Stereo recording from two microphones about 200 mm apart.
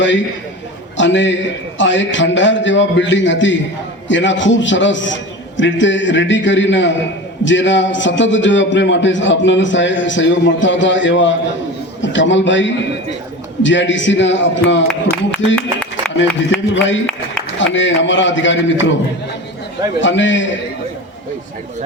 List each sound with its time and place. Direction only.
0.9 s a man's voice: 65° left (ahead or behind)
15.5 s music: 5° left (ahead or behind)
16.7 s a man's voice: 70° left (ahead or behind)
20.0 s a man's voice: 65° left (ahead or behind)